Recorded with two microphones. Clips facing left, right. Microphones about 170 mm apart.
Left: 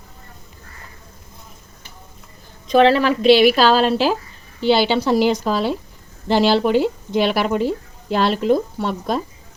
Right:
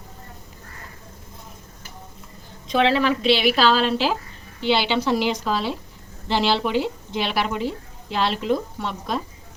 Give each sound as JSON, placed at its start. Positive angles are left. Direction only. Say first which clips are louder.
{"t": 2.7, "sound": "a woman's voice", "louder": "left 5 dB", "side_deg": 40}